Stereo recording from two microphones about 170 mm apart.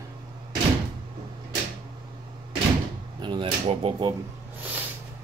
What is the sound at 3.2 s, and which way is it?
Speech, 30° right (ahead or behind).